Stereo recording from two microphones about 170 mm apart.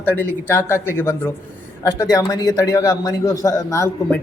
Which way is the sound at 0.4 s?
15° left (ahead or behind).